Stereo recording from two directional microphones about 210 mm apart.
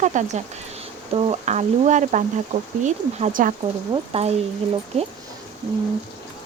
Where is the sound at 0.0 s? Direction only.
35° right (ahead or behind).